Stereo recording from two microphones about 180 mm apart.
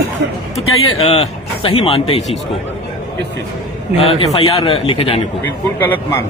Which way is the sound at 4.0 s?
30° left (ahead or behind).